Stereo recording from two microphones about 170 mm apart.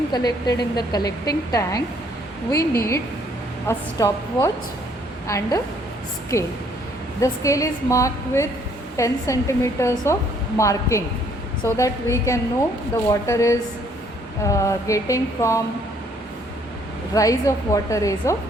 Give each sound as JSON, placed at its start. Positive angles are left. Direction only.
{"t": 0.1, "sound": "a woman's voice", "side_deg": 25}
{"t": 17.2, "sound": "a woman's voice", "side_deg": 20}